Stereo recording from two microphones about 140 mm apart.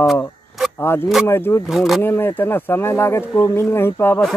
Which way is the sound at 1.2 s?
15° left (ahead or behind).